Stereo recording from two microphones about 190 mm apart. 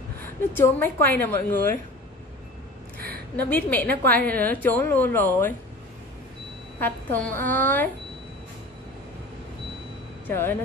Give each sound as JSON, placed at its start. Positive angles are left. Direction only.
{"t": 0.5, "sound": "a woman's voice", "side_deg": 10}
{"t": 3.0, "sound": "a sound", "side_deg": -55}
{"t": 3.4, "sound": "a woman's voice", "side_deg": 10}
{"t": 6.8, "sound": "a woman's voice", "side_deg": 10}
{"t": 10.2, "sound": "a woman's voice", "side_deg": 10}